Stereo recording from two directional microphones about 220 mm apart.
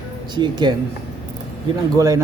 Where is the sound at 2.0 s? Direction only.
15° right (ahead or behind).